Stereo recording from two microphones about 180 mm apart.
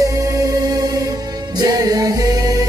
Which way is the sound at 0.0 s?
15° right (ahead or behind).